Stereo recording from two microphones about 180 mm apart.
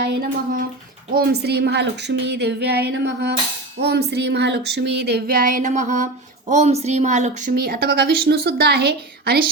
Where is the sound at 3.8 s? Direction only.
70° right (ahead or behind); by 7.5 s 40° right (ahead or behind).